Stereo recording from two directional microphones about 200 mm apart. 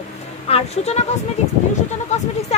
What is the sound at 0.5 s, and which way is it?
Speech, 30° left (ahead or behind).